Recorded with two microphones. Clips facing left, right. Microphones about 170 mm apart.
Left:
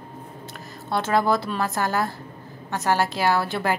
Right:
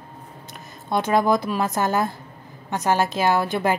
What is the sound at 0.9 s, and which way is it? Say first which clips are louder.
A woman's voice: right 2 dB; 15° right (ahead or behind).